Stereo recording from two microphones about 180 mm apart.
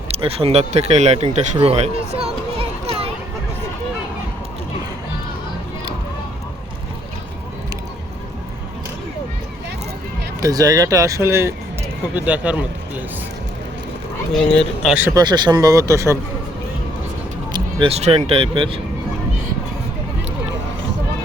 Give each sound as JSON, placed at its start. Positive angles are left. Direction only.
{"t": 0.1, "sound": "speech", "side_deg": -35}
{"t": 2.6, "sound": "children playing", "side_deg": -35}
{"t": 10.4, "sound": "speech", "side_deg": -20}
{"t": 14.3, "sound": "speech", "side_deg": 5}
{"t": 14.8, "sound": "speech", "side_deg": -10}
{"t": 15.1, "sound": "speech", "side_deg": -25}
{"t": 17.5, "sound": "speech", "side_deg": -30}